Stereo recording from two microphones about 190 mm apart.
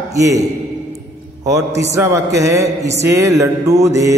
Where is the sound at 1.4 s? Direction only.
15° right (ahead or behind).